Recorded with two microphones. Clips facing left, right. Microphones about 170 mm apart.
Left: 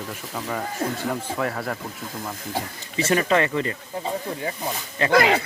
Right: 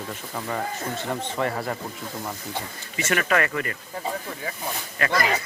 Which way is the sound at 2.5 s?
30° left (ahead or behind).